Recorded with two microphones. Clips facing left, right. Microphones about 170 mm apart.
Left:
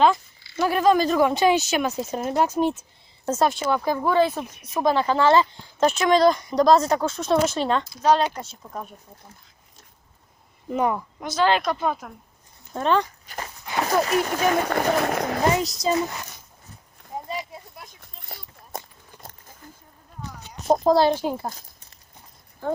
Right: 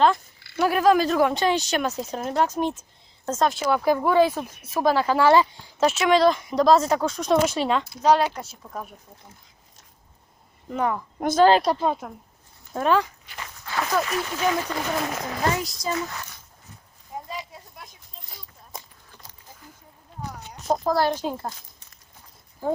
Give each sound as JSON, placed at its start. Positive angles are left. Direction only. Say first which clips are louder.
{"t": 0.5, "sound": "speech", "louder": "even", "side_deg": -5}
{"t": 10.7, "sound": "a woman's voice", "louder": "left 2 dB", "side_deg": 10}
{"t": 11.2, "sound": "speech", "louder": "right 5 dB", "side_deg": -50}
{"t": 12.7, "sound": "speech", "louder": "even", "side_deg": -5}
{"t": 13.2, "sound": "walk", "louder": "left 4 dB", "side_deg": 40}
{"t": 13.8, "sound": "speech", "louder": "left 4 dB", "side_deg": 40}
{"t": 14.3, "sound": "speech", "louder": "left 3 dB", "side_deg": 55}
{"t": 15.4, "sound": "speech", "louder": "left 3 dB", "side_deg": 20}
{"t": 18.0, "sound": "a sound", "louder": "left 4 dB", "side_deg": 60}
{"t": 20.7, "sound": "speech", "louder": "left 4 dB", "side_deg": 20}